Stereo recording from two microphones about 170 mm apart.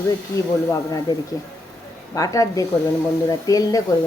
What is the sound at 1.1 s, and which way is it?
Speech, 20° left (ahead or behind).